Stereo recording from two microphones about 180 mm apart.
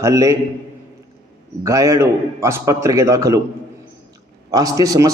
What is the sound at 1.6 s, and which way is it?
A man's voice, 20° right (ahead or behind).